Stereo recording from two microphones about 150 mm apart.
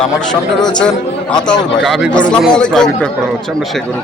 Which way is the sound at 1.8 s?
Centre (ahead or behind).